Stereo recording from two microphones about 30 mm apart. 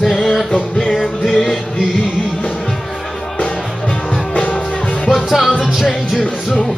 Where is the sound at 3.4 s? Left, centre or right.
Left.